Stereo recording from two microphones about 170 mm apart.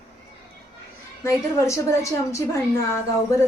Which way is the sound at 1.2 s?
15° left (ahead or behind).